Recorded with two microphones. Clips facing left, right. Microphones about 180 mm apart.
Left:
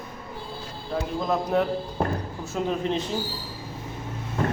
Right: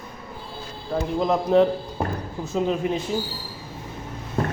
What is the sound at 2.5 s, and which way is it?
Speech, 15° right (ahead or behind).